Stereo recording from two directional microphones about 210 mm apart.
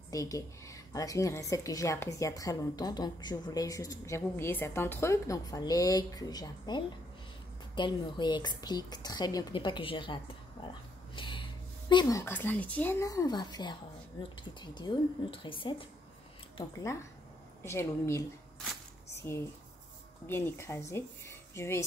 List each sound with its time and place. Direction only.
0.1 s a woman's voice: 15° left (ahead or behind)
11.1 s gasp: 25° left (ahead or behind)
11.9 s a woman's voice: 20° left (ahead or behind)
16.5 s a woman's voice: 15° left (ahead or behind)
19.2 s a woman's voice: 10° left (ahead or behind)